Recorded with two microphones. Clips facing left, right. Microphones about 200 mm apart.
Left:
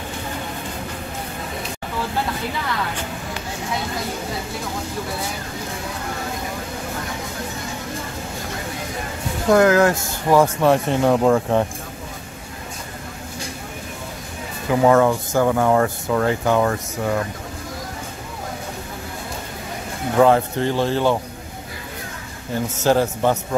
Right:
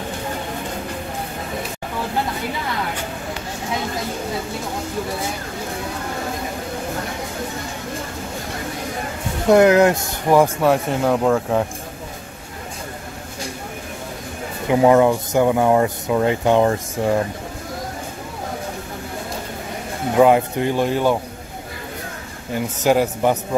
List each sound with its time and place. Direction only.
9.5 s speech: 20° right (ahead or behind)
10.6 s speech: 5° right (ahead or behind)
14.7 s speech: 20° right (ahead or behind)
20.2 s speech: 15° right (ahead or behind)
22.5 s speech: 10° right (ahead or behind)